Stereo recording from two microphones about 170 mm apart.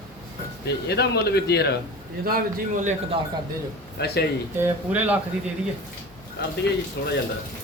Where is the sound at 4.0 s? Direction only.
75° left (ahead or behind).